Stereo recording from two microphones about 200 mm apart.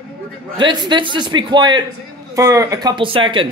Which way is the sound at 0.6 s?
20° right (ahead or behind).